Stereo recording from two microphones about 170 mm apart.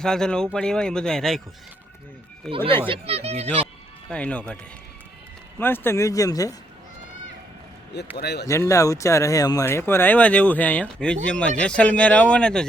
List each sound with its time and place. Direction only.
0.0 s speech: 5° left (ahead or behind)
2.5 s speech: 5° left (ahead or behind)
2.8 s speech: 35° right (ahead or behind)
4.1 s speech: 5° left (ahead or behind)
5.5 s speech: 10° left (ahead or behind)
8.1 s speech: 75° left (ahead or behind)
8.4 s speech: 20° left (ahead or behind)